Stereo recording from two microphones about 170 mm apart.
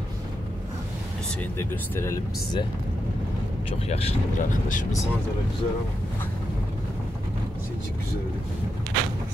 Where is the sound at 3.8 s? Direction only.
35° left (ahead or behind).